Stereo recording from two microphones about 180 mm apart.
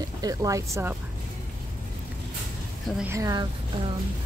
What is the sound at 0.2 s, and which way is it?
Speech, 20° right (ahead or behind).